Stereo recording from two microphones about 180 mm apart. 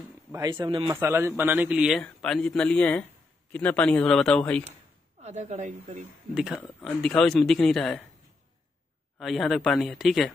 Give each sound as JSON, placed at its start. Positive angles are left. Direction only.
{"t": 0.3, "sound": "speech", "side_deg": -20}
{"t": 0.9, "sound": "a man's voice", "side_deg": -15}
{"t": 5.2, "sound": "speech", "side_deg": -40}
{"t": 6.6, "sound": "a man's voice", "side_deg": 0}
{"t": 9.2, "sound": "a man's voice", "side_deg": 0}